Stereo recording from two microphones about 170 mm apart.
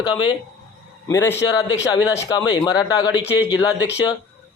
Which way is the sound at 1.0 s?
15° left (ahead or behind).